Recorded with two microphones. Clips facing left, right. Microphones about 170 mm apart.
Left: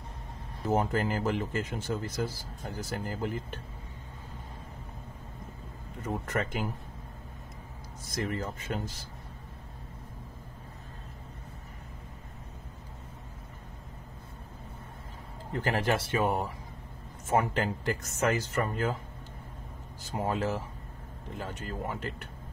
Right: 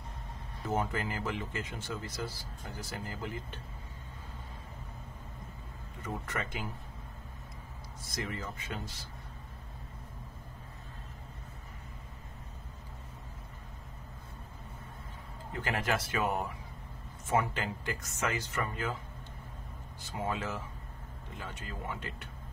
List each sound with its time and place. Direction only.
0.7 s speech: 45° left (ahead or behind)
6.0 s speech: 45° left (ahead or behind)
8.1 s speech: 45° left (ahead or behind)
15.5 s speech: 35° left (ahead or behind)
17.3 s speech: 40° left (ahead or behind)
20.0 s speech: 40° left (ahead or behind)